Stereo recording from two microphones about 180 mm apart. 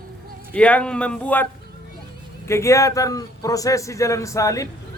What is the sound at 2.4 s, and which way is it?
A man's voice, 15° left (ahead or behind).